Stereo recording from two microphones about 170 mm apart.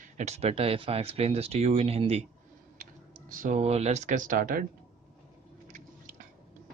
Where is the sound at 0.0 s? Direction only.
40° right (ahead or behind).